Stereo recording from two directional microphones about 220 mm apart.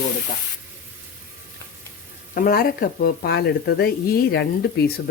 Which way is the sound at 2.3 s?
45° left (ahead or behind).